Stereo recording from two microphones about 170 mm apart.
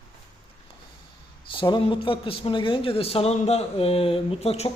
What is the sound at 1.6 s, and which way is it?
A woman's voice, 30° left (ahead or behind).